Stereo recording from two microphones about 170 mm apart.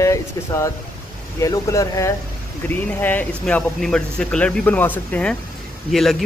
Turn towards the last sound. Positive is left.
turn(degrees=0)  # may be behind; listen again after turning